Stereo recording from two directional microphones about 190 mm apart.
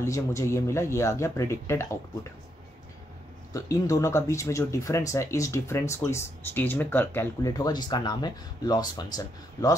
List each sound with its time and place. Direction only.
0.0 s speech: 15° left (ahead or behind)
3.5 s speech: 15° left (ahead or behind)